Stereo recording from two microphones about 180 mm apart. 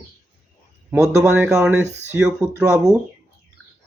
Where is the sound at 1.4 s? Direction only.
5° right (ahead or behind).